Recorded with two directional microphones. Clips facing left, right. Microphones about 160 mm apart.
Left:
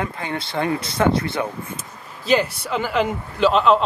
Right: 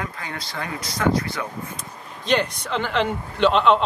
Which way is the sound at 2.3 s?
5° left (ahead or behind).